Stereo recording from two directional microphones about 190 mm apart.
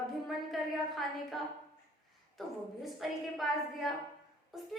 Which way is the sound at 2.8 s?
Centre (ahead or behind).